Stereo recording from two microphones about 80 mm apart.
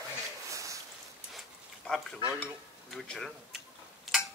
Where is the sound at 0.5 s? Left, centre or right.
Right.